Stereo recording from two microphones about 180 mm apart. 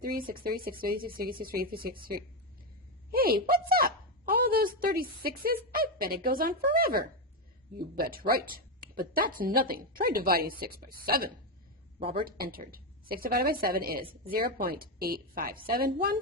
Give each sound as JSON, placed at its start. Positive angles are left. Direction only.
{"t": 0.3, "sound": "a woman's voice", "side_deg": -55}
{"t": 3.1, "sound": "a woman's voice", "side_deg": -55}
{"t": 12.0, "sound": "speech", "side_deg": -30}
{"t": 12.3, "sound": "a woman's voice", "side_deg": -55}